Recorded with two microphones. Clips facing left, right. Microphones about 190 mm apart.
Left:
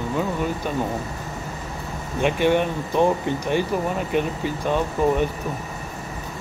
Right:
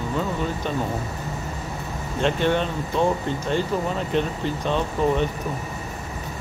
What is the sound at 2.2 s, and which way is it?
Speech, 10° left (ahead or behind).